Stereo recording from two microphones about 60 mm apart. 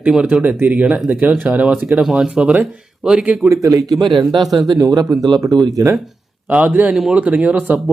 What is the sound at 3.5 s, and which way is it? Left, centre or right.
A man's voice, right.